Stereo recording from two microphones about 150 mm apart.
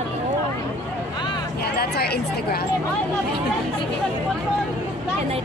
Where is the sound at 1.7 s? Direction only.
90° left.